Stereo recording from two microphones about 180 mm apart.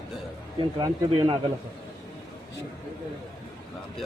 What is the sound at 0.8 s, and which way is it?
Speech, 25° right (ahead or behind).